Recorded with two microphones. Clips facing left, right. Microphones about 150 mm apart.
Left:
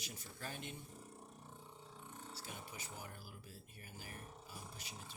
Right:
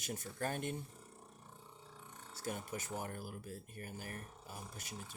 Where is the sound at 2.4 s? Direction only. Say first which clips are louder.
Right 14 dB; 50° right (ahead or behind).